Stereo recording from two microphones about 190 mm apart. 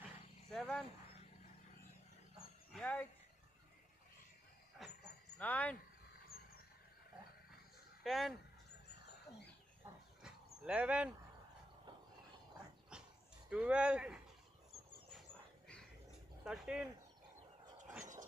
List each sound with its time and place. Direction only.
0.5 s speech: centre (ahead or behind)
2.7 s a sound: 5° left (ahead or behind)
4.8 s dog: centre (ahead or behind)
5.4 s a sound: 10° left (ahead or behind)
8.0 s speech: centre (ahead or behind)
10.2 s dog: 5° right (ahead or behind)
12.9 s dog: 5° right (ahead or behind)
13.5 s speech: 5° right (ahead or behind)
16.4 s speech: 5° right (ahead or behind)
18.0 s a sound: 40° right (ahead or behind)